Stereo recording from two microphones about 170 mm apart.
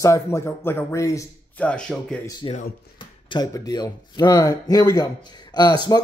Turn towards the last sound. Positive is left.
turn(degrees=25)  # may be behind; listen again after turning